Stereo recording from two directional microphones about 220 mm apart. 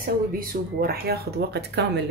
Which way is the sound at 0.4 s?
45° right (ahead or behind).